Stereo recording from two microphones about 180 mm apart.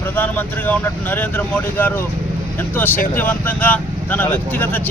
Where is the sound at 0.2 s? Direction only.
10° left (ahead or behind).